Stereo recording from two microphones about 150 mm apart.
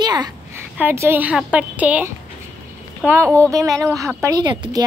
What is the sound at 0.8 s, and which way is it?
A woman's voice, 15° right (ahead or behind).